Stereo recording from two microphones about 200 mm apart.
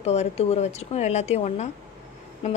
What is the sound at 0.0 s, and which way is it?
Speech, 35° left (ahead or behind).